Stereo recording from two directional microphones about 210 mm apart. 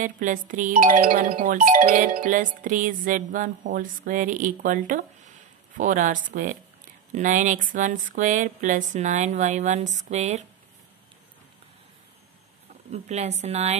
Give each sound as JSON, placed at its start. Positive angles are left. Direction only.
{"t": 0.0, "sound": "speech", "side_deg": -40}
{"t": 12.9, "sound": "speech", "side_deg": -30}